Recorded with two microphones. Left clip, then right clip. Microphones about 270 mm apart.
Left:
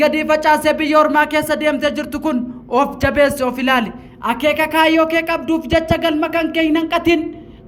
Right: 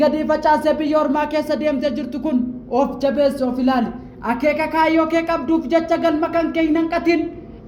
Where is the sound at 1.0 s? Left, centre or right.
Left.